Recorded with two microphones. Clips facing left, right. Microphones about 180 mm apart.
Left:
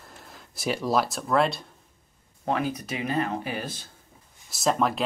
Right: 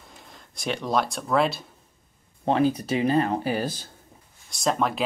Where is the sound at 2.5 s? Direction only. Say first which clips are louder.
Right 6 dB; 30° right (ahead or behind).